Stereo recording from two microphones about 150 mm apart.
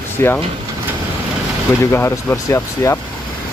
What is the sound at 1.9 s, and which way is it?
Speech, 15° left (ahead or behind).